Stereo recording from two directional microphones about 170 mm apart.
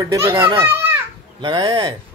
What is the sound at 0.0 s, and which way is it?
A child's voice, 15° right (ahead or behind).